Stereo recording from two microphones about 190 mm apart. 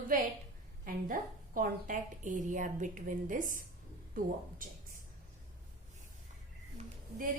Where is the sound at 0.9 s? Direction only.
45° right (ahead or behind).